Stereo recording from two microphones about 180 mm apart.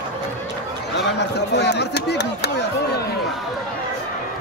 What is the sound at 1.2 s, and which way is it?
Speech, 70° left (ahead or behind).